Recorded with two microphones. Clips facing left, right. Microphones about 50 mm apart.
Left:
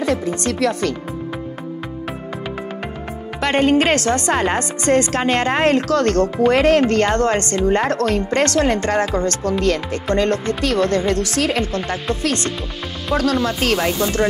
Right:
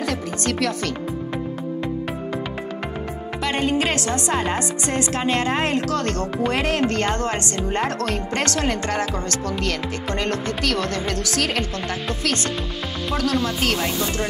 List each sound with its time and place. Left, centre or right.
0.0 s speech: left
3.3 s speech: left
13.7 s speech: left